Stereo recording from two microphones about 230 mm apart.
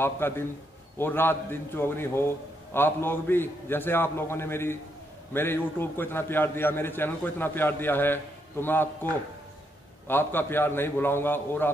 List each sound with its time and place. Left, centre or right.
0.0 s a man's voice: centre